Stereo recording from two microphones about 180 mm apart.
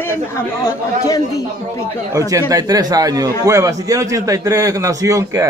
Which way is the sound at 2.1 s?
20° right (ahead or behind).